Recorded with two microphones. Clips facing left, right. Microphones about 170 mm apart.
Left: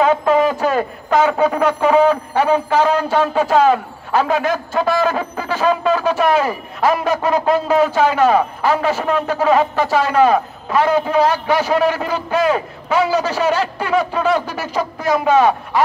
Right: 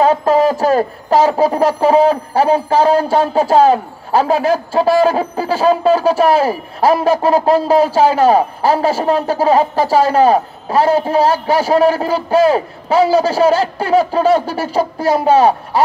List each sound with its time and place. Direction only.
0.0 s a man's voice: 30° right (ahead or behind)